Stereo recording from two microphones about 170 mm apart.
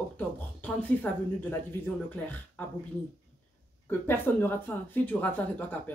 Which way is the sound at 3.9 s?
10° left (ahead or behind).